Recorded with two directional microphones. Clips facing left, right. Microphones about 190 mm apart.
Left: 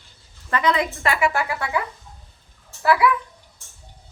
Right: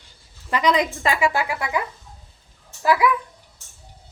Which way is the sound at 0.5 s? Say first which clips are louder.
Right 1 dB; 15° right (ahead or behind).